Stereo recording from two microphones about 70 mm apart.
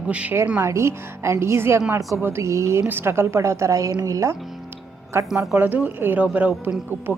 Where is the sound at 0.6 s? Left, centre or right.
Right.